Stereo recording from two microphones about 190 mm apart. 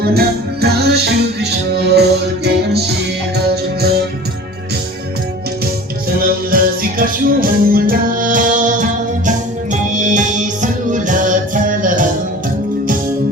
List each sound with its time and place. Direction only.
0.0 s music: 55° right (ahead or behind)
6.1 s music: 50° right (ahead or behind)